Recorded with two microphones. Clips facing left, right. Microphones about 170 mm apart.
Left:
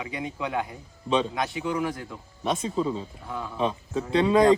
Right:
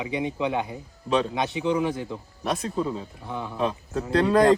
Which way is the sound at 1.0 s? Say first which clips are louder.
Right 1 dB; centre (ahead or behind).